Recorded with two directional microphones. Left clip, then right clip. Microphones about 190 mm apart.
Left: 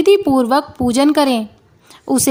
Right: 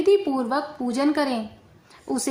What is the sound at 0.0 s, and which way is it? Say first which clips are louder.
A woman's voice: left 8 dB; 45° left (ahead or behind).